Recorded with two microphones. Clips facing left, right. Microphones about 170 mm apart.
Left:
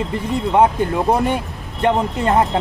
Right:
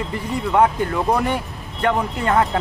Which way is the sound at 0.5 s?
20° left (ahead or behind).